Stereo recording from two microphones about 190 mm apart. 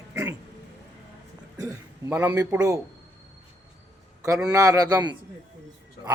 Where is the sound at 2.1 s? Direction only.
10° right (ahead or behind).